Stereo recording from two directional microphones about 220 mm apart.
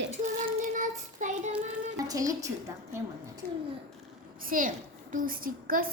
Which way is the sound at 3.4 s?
40° right (ahead or behind).